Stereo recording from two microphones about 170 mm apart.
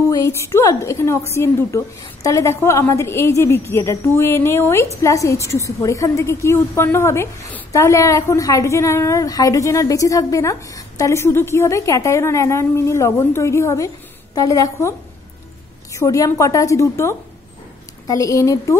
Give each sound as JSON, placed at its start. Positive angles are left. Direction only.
{"t": 0.1, "sound": "a woman's voice", "side_deg": 15}